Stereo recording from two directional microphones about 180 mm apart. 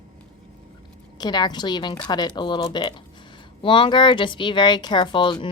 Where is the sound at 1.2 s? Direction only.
25° left (ahead or behind).